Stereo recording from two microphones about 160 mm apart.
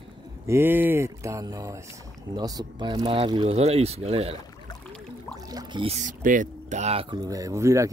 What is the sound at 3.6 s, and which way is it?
Speech, 40° right (ahead or behind).